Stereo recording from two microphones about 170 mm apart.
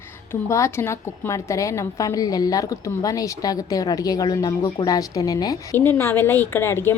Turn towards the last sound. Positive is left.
turn(degrees=15)  # may be behind; listen again after turning